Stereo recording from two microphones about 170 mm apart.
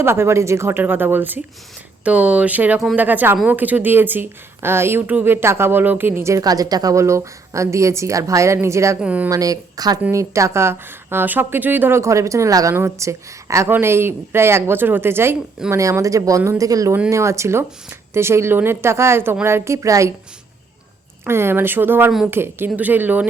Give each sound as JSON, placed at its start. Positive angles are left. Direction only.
{"t": 0.0, "sound": "a woman's voice", "side_deg": -15}
{"t": 9.3, "sound": "a woman's voice", "side_deg": -20}
{"t": 21.2, "sound": "a woman's voice", "side_deg": -15}